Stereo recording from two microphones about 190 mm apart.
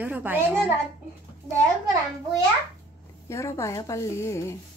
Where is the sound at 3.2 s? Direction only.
15° left (ahead or behind).